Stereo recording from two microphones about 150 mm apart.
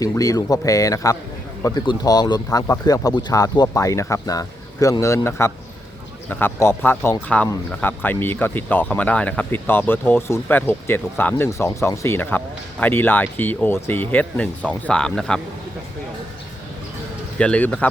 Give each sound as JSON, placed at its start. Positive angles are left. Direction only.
{"t": 0.0, "sound": "speech", "side_deg": 20}
{"t": 17.3, "sound": "speech", "side_deg": 10}